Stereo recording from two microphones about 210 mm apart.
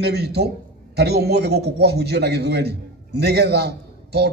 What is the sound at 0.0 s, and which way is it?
A man's voice, 50° right (ahead or behind).